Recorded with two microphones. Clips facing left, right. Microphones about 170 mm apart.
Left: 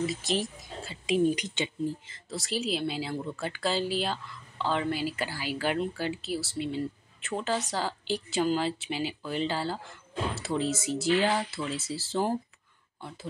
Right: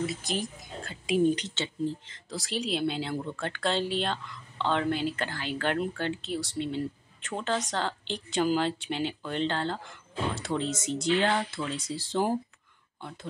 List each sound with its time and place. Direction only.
0.0 s speech: centre (ahead or behind)
1.3 s speech: 15° left (ahead or behind)